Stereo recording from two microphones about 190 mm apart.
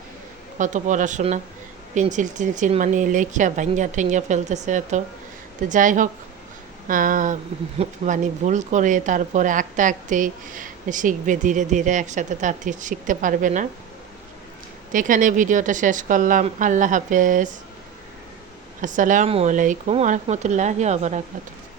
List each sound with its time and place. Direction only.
0.6 s speech: 40° right (ahead or behind)
14.9 s speech: 45° right (ahead or behind)
18.8 s speech: 40° right (ahead or behind)